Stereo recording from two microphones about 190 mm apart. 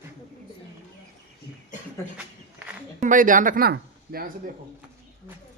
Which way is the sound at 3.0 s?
45° right (ahead or behind).